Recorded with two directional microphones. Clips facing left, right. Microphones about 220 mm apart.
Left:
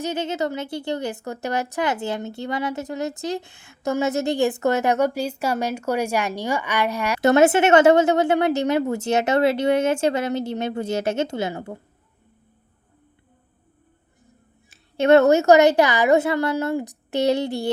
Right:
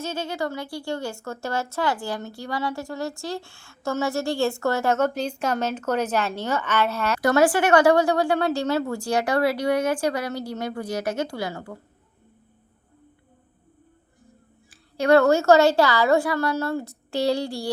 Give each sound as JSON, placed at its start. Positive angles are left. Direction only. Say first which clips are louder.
{"t": 0.0, "sound": "speech", "louder": "left 4 dB", "side_deg": 20}
{"t": 14.7, "sound": "speech", "louder": "left 3 dB", "side_deg": 25}